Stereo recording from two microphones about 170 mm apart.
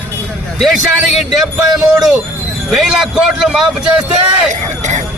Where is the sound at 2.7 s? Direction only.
Centre (ahead or behind).